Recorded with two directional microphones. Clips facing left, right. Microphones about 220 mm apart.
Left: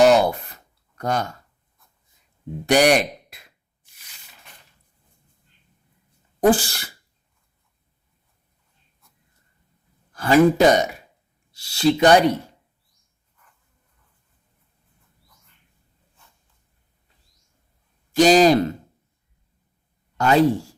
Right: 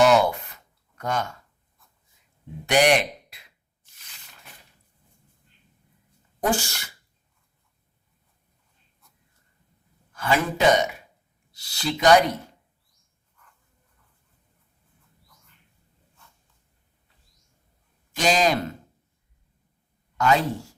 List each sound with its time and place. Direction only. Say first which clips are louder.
0.0 s a sound: left 3 dB; 35° left (ahead or behind)
2.6 s speech: left 3 dB; 40° left (ahead or behind)
3.9 s a sound: left 1 dB; 10° left (ahead or behind)
6.5 s speech: left 5 dB; 35° left (ahead or behind)
10.1 s speech: left 10 dB; 40° left (ahead or behind)
11.6 s speech: left 6 dB; 25° left (ahead or behind)
18.1 s speech: left 8 dB; 35° left (ahead or behind)
20.1 s speech: left 6 dB; 30° left (ahead or behind)